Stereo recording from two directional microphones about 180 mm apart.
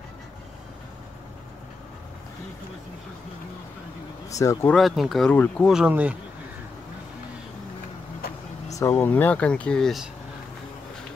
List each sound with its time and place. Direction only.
4.3 s speech: 15° left (ahead or behind)
4.7 s speech: centre (ahead or behind)
5.7 s speech: 5° right (ahead or behind)
8.7 s speech: 15° left (ahead or behind)